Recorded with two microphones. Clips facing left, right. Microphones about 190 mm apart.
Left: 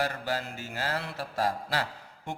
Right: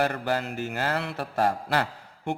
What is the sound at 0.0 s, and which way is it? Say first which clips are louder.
Mantra: right 5 dB; 60° right (ahead or behind).